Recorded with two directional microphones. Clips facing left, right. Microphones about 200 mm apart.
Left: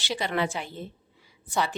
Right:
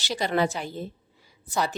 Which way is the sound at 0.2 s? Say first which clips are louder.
Right 5 dB; 40° right (ahead or behind).